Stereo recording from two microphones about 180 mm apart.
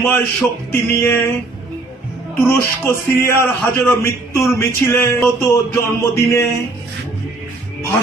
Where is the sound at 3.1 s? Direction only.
15° left (ahead or behind).